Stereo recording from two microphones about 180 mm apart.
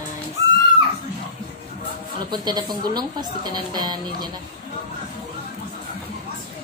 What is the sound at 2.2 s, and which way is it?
Speech, 25° right (ahead or behind).